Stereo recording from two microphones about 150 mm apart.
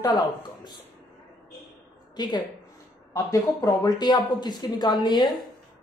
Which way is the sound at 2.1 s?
30° left (ahead or behind).